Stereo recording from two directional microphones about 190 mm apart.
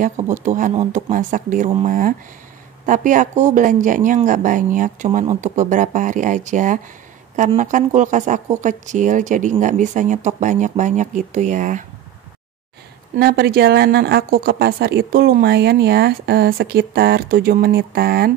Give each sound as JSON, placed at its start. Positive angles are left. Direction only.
{"t": 0.0, "sound": "speech", "side_deg": -40}
{"t": 13.2, "sound": "speech", "side_deg": -55}